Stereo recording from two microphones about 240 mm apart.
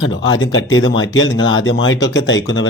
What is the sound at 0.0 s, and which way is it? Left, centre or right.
Speech, left.